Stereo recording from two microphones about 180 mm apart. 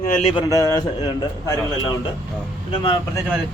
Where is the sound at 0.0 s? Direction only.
40° left (ahead or behind).